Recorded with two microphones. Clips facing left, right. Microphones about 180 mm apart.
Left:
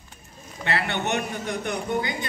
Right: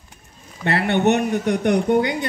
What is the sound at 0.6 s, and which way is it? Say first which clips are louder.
Speech: right 9 dB; 55° right (ahead or behind).